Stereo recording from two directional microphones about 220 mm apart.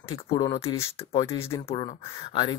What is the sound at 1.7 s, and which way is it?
Speech, 25° left (ahead or behind).